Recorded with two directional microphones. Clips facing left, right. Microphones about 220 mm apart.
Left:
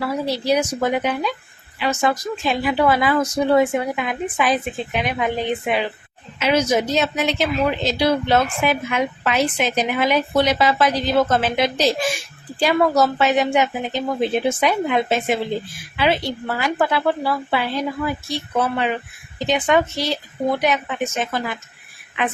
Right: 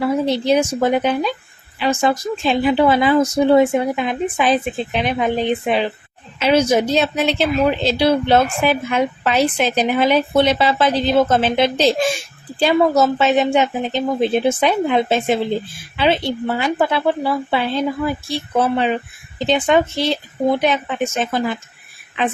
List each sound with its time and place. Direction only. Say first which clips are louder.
0.0 s a woman's voice: right 5 dB; 20° right (ahead or behind)